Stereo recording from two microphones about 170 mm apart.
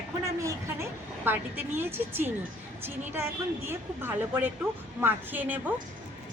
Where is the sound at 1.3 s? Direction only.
10° right (ahead or behind).